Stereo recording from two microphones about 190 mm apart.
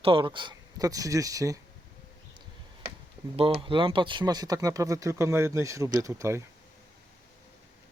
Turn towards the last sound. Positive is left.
turn(degrees=-15)  # may be behind; listen again after turning